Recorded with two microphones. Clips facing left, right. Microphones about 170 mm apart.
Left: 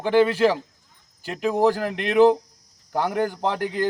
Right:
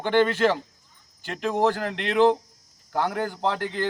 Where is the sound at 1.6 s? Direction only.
15° left (ahead or behind).